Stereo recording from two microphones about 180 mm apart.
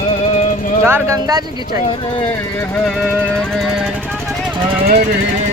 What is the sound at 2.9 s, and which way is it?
Music, 5° right (ahead or behind).